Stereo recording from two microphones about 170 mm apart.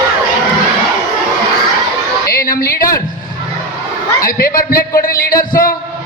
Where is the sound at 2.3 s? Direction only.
60° left (ahead or behind).